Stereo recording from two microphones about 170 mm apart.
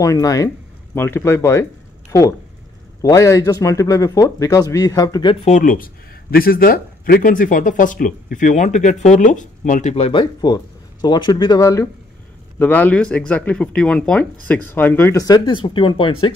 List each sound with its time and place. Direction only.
0.0 s speech: 20° left (ahead or behind)
5.3 s speech: 35° left (ahead or behind)
5.6 s speech: 55° left (ahead or behind); by 16.3 s 30° left (ahead or behind)